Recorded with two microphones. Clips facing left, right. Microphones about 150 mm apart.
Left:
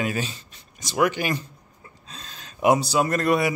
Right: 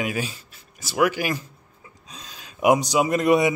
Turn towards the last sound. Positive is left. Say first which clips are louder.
# right 3 dB
turn(degrees=-20)  # may be behind; listen again after turning